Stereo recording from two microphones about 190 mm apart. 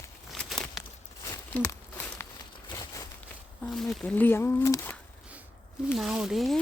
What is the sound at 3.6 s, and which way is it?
Speech, centre (ahead or behind).